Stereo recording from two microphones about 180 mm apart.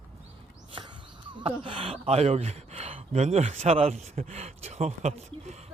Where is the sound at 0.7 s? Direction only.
25° right (ahead or behind).